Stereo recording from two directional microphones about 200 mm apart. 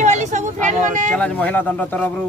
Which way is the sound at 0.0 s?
35° right (ahead or behind).